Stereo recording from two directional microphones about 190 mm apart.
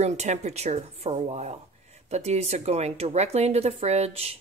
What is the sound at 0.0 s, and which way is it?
Speech, 35° right (ahead or behind).